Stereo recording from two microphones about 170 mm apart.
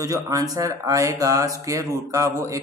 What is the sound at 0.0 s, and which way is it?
Speech, 20° right (ahead or behind).